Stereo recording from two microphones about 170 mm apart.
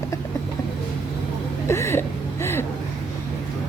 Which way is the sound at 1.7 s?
15° left (ahead or behind).